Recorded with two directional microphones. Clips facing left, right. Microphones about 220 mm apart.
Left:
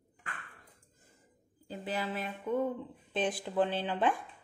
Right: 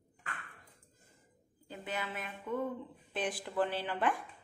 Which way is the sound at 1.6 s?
35° left (ahead or behind).